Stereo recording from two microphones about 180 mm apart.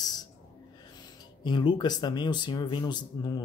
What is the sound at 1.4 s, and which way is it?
Speech, 25° left (ahead or behind).